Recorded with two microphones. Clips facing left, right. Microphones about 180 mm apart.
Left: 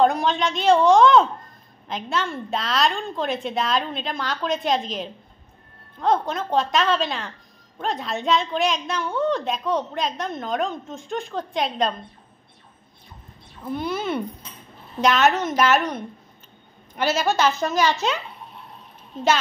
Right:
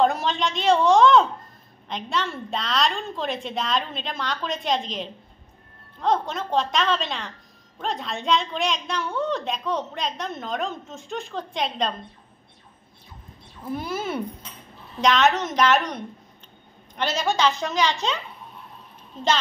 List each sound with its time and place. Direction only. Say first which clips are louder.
0.0 s a woman's voice: left 2 dB; centre (ahead or behind)
13.7 s a woman's voice: left 3 dB; 5° right (ahead or behind)
16.9 s a woman's voice: left 3 dB; 5° left (ahead or behind)